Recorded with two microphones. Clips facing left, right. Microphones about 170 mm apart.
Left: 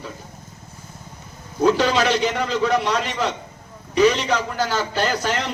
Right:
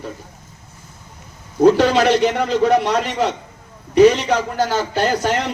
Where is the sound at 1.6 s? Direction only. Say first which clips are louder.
Right 5 dB; 55° right (ahead or behind).